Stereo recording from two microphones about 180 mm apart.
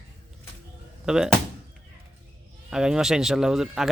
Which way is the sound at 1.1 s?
5° right (ahead or behind).